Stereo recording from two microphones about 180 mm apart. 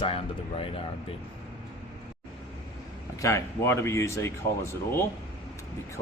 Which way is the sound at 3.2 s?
15° left (ahead or behind).